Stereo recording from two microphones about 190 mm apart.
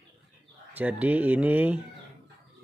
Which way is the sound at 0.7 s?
10° right (ahead or behind).